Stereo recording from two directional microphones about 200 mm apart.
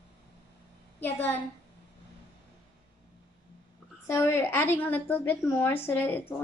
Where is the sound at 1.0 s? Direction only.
10° left (ahead or behind).